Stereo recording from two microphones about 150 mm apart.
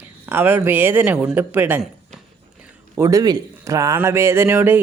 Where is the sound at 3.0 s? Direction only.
20° right (ahead or behind).